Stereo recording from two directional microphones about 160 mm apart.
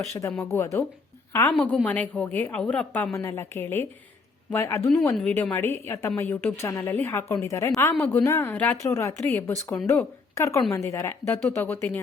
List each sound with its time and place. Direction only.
0.0 s a woman's voice: 15° left (ahead or behind)